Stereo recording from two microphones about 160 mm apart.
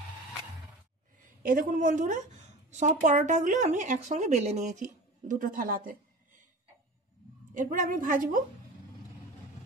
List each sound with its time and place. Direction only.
1.2 s a woman's voice: 60° right (ahead or behind)
7.5 s a woman's voice: 55° right (ahead or behind)